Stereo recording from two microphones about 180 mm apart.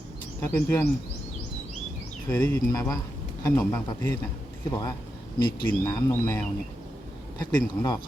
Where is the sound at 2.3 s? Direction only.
10° left (ahead or behind).